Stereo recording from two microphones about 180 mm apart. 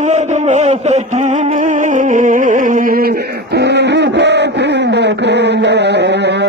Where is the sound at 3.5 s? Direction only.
70° right (ahead or behind).